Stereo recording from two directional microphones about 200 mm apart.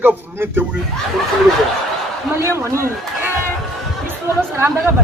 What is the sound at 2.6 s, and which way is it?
Speech, 15° right (ahead or behind).